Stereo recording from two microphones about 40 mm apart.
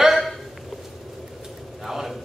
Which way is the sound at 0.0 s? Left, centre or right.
Centre.